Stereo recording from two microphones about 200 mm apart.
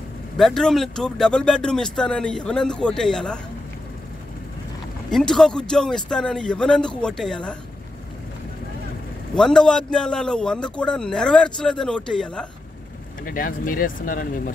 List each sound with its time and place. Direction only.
0.4 s a man's voice: centre (ahead or behind)
5.1 s a man's voice: centre (ahead or behind)
9.3 s a man's voice: 5° left (ahead or behind)
13.2 s speech: 45° left (ahead or behind)